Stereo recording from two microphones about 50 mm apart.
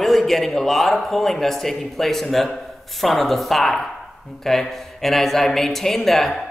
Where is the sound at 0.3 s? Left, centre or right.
Centre.